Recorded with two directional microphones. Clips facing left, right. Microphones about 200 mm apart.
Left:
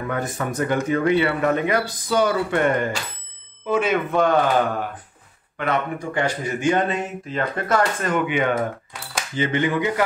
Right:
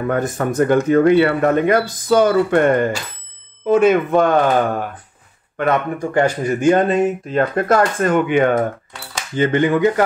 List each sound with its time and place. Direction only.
0.0 s speech: 50° right (ahead or behind)